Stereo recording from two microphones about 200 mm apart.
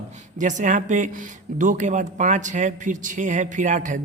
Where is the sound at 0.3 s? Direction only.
40° right (ahead or behind).